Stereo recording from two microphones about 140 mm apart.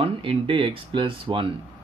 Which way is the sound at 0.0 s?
40° right (ahead or behind).